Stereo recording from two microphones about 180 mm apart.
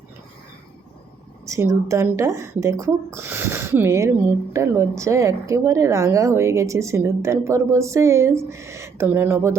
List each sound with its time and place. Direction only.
1.5 s a woman's voice: 15° right (ahead or behind)